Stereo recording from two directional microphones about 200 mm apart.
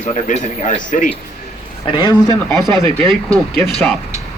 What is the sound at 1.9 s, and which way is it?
Speech, 20° left (ahead or behind).